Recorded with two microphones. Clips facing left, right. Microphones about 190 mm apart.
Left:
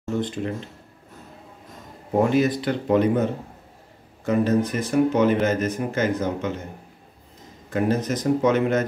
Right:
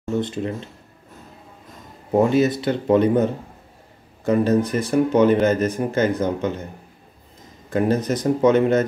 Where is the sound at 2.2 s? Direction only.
25° right (ahead or behind).